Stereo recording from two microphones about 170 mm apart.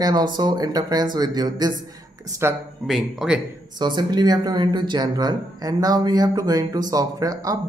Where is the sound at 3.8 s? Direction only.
25° right (ahead or behind).